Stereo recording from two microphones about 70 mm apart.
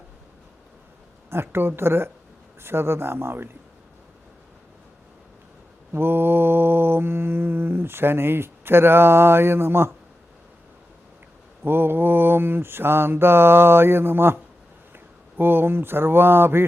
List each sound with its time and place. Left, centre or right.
1.3 s mantra: right
5.9 s mantra: right
11.6 s mantra: right
14.9 s speech: right